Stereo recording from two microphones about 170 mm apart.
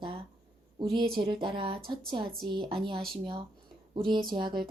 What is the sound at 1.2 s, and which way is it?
Speech, 30° right (ahead or behind).